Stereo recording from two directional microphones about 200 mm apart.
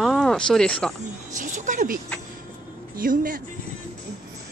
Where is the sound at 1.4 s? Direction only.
40° right (ahead or behind).